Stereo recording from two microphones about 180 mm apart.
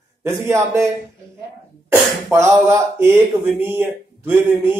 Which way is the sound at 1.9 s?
15° right (ahead or behind).